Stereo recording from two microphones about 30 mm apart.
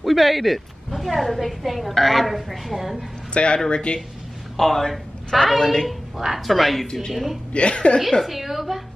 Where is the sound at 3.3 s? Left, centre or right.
Left.